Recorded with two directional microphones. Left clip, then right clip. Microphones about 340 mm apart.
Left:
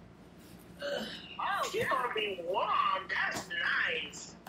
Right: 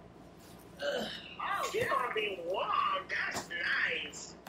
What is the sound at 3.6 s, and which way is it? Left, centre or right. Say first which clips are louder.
Music: left 1 dB; centre.